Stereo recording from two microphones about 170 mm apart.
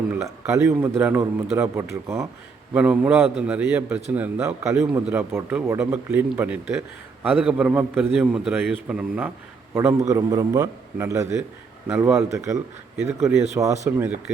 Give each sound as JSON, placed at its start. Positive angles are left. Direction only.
{"t": 0.3, "sound": "a man's voice", "side_deg": -15}
{"t": 10.1, "sound": "a man's voice", "side_deg": -20}